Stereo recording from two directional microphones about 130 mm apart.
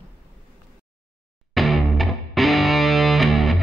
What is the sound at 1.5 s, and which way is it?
Music, centre (ahead or behind).